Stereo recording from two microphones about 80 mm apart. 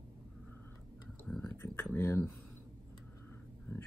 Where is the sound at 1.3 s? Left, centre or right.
Centre.